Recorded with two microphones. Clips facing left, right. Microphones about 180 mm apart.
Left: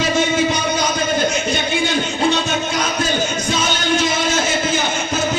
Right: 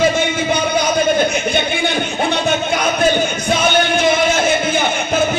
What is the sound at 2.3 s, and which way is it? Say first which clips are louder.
Music: right 3 dB; 60° right (ahead or behind).